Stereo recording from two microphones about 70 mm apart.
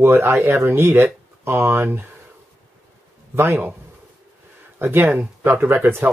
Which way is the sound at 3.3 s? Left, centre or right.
Right.